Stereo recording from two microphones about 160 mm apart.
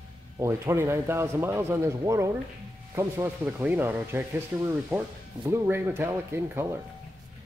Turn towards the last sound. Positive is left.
turn(degrees=-15)  # may be behind; listen again after turning